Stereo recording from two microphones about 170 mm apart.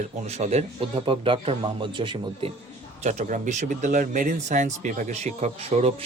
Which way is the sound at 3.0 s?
45° right (ahead or behind).